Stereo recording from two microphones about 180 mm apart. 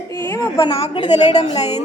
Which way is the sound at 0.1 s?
20° left (ahead or behind).